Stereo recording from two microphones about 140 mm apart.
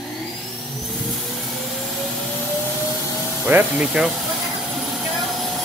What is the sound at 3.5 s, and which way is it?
Speech, 10° right (ahead or behind).